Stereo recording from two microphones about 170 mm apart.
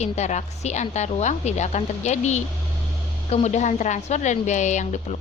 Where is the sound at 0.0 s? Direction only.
40° left (ahead or behind).